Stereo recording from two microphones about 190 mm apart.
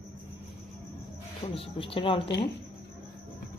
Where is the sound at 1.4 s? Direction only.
35° left (ahead or behind).